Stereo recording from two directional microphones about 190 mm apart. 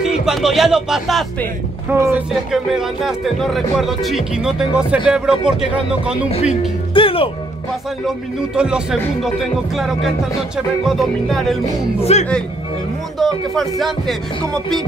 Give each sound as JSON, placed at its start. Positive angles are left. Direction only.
{"t": 0.0, "sound": "speech", "side_deg": -5}
{"t": 6.9, "sound": "speech", "side_deg": 30}
{"t": 8.5, "sound": "speech", "side_deg": -5}
{"t": 12.0, "sound": "speech", "side_deg": 35}
{"t": 13.2, "sound": "speech", "side_deg": 0}